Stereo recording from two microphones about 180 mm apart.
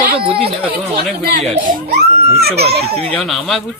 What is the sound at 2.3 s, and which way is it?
Crying, 60° right (ahead or behind).